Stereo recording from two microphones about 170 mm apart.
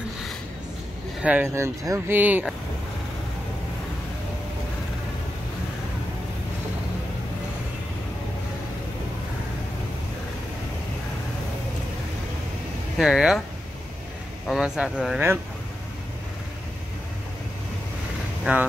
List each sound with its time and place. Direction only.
1.2 s speech: 10° right (ahead or behind)
12.9 s speech: centre (ahead or behind)
14.5 s speech: 5° right (ahead or behind)
18.4 s speech: 10° right (ahead or behind)